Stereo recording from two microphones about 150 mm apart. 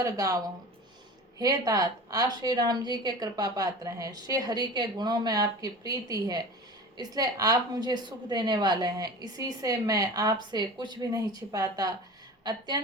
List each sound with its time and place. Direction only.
0.0 s a woman's voice: 20° right (ahead or behind)